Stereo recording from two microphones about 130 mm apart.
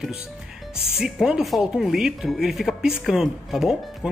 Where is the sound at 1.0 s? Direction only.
5° right (ahead or behind).